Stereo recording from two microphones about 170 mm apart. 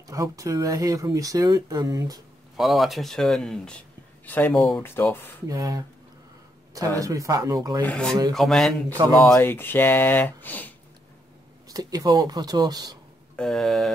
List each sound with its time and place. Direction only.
0.1 s speech: 20° right (ahead or behind)
2.5 s speech: centre (ahead or behind)
5.5 s speech: 20° right (ahead or behind)
7.0 s speech: 20° right (ahead or behind)
7.8 s speech: 5° left (ahead or behind)
8.8 s speech: 25° right (ahead or behind)
9.3 s speech: 15° left (ahead or behind)
11.7 s speech: 20° right (ahead or behind)
13.4 s speech: centre (ahead or behind)